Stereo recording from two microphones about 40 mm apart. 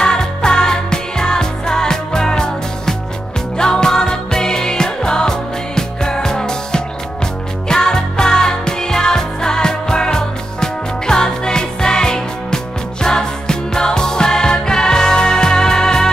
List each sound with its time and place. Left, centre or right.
0.0 s music: centre